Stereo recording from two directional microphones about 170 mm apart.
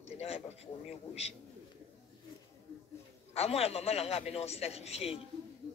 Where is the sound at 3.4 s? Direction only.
35° left (ahead or behind).